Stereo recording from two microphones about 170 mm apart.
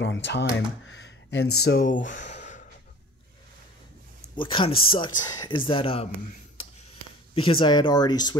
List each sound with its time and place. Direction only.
0.0 s speech: 90° left; by 1.9 s 75° left (ahead or behind)
1.9 s speech: 50° left (ahead or behind)
4.4 s speech: 30° left (ahead or behind)
7.3 s speech: 30° left (ahead or behind)